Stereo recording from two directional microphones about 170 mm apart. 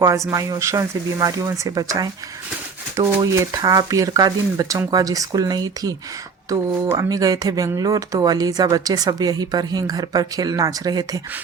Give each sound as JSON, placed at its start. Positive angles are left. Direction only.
{"t": 0.3, "sound": "speech", "side_deg": -20}